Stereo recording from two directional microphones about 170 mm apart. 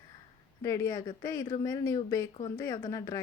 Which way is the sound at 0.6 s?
20° left (ahead or behind).